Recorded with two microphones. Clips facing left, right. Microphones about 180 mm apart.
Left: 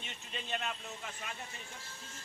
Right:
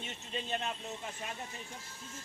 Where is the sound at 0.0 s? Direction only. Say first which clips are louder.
Right 5 dB; 35° right (ahead or behind).